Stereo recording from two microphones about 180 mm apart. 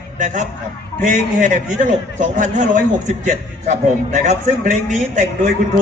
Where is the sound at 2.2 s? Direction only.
45° right (ahead or behind).